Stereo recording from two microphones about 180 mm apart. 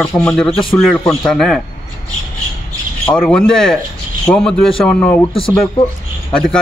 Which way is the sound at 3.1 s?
5° left (ahead or behind).